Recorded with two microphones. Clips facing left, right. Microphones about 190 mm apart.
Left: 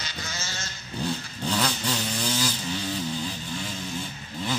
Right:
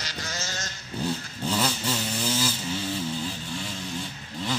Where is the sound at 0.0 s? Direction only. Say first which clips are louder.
Right 2 dB; 40° right (ahead or behind).